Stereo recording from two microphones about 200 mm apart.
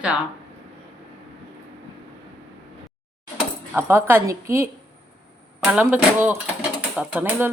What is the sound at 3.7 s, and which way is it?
A woman's voice, 10° right (ahead or behind).